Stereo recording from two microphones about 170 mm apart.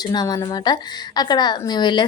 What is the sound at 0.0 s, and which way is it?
A woman's voice, 25° left (ahead or behind).